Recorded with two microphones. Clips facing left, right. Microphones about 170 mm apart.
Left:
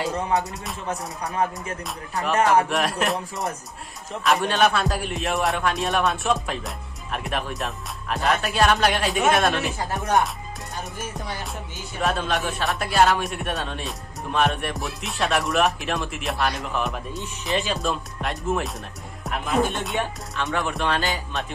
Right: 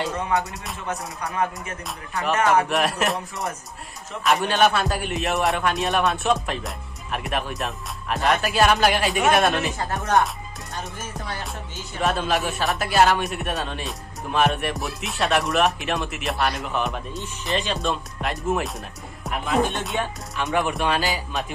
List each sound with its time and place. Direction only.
0.0 s speech: centre (ahead or behind)
1.3 s music: 30° left (ahead or behind)
2.7 s speech: centre (ahead or behind)
12.0 s speech: centre (ahead or behind)
20.5 s music: 15° right (ahead or behind)
21.0 s speech: centre (ahead or behind)